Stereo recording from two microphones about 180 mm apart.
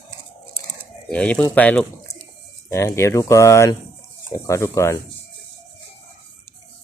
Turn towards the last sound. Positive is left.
turn(degrees=15)  # may be behind; listen again after turning